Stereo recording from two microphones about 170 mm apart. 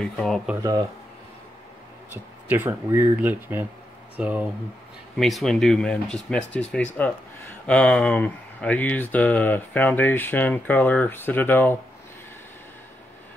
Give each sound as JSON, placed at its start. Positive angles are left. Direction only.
{"t": 0.0, "sound": "speech", "side_deg": 5}
{"t": 0.6, "sound": "speech", "side_deg": -20}
{"t": 2.0, "sound": "speech", "side_deg": -10}